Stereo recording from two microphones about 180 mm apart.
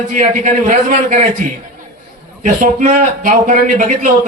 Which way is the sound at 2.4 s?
45° right (ahead or behind).